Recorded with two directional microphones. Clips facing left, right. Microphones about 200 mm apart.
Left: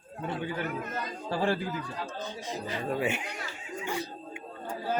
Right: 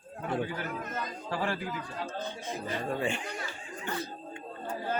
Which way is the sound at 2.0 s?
60° right (ahead or behind).